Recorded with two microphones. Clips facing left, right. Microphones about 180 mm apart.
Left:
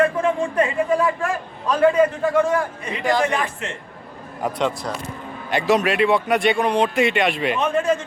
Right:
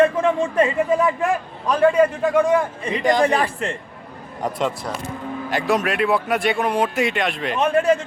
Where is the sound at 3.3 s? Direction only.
35° right (ahead or behind).